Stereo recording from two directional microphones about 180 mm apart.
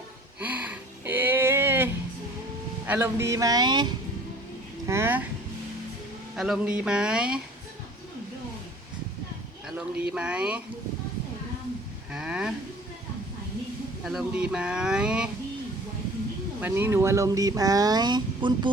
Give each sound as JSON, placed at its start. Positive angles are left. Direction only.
{"t": 0.3, "sound": "a sound", "side_deg": -10}
{"t": 2.8, "sound": "speech", "side_deg": -10}
{"t": 4.9, "sound": "speech", "side_deg": -15}
{"t": 6.3, "sound": "speech", "side_deg": 0}
{"t": 9.6, "sound": "speech", "side_deg": -5}
{"t": 12.1, "sound": "speech", "side_deg": -5}
{"t": 14.0, "sound": "speech", "side_deg": 0}
{"t": 16.6, "sound": "speech", "side_deg": -10}